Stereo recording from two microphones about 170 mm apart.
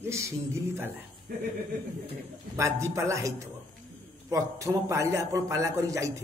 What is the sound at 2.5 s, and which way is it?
A man's voice, 15° right (ahead or behind).